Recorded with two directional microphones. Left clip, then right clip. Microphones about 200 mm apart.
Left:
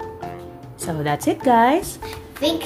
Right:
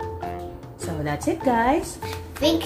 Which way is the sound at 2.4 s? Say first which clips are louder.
Even; 5° left (ahead or behind).